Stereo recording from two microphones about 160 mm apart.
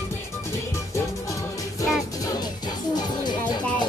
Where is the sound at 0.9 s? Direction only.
20° left (ahead or behind).